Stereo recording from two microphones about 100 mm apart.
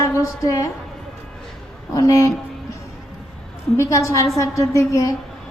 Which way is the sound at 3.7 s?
30° left (ahead or behind).